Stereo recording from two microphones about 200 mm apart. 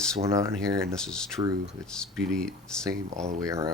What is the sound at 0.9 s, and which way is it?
Speech, 5° left (ahead or behind).